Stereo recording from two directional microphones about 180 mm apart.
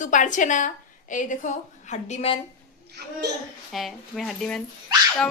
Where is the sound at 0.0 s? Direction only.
45° left (ahead or behind).